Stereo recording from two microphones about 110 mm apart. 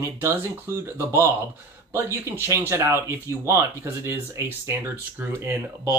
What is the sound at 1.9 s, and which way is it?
Speech, 20° right (ahead or behind).